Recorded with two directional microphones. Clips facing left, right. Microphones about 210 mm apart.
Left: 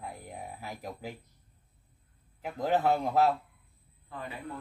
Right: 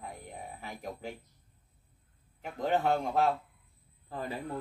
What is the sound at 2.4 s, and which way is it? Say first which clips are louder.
Speech: left 1 dB; centre (ahead or behind).